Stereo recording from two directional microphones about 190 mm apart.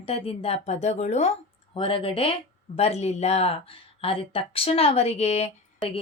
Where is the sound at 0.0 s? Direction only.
30° left (ahead or behind).